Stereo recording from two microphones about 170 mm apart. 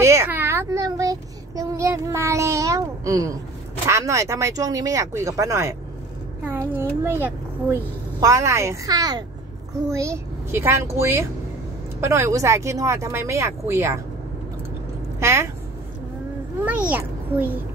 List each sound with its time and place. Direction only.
0.0 s a child's voice: 15° right (ahead or behind)
7.0 s speech: 10° right (ahead or behind)
15.1 s a sound: 15° right (ahead or behind)
16.6 s a child's voice: 10° right (ahead or behind)